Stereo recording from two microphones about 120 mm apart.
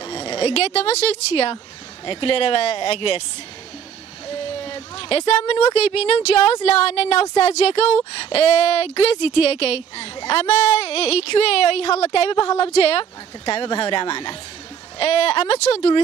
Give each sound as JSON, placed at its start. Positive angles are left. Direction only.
{"t": 0.0, "sound": "speech", "side_deg": 40}
{"t": 4.3, "sound": "speech", "side_deg": 50}